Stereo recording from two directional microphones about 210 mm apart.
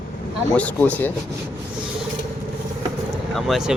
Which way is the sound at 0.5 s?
5° left (ahead or behind).